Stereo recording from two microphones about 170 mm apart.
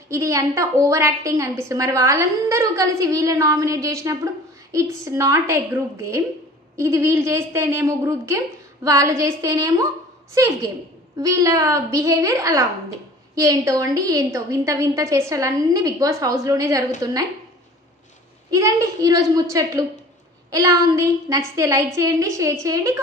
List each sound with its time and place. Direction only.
0.1 s a woman's voice: 20° right (ahead or behind)
18.5 s a woman's voice: 20° right (ahead or behind)
20.5 s a woman's voice: 20° right (ahead or behind)